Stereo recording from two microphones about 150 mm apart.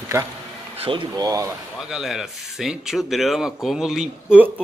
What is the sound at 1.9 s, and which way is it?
Speech, centre (ahead or behind).